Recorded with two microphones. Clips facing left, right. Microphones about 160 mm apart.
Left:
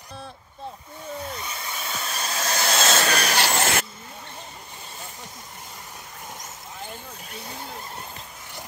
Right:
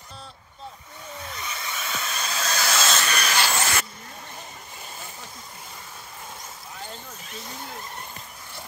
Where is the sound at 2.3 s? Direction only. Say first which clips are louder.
Left 2 dB; 15° left (ahead or behind).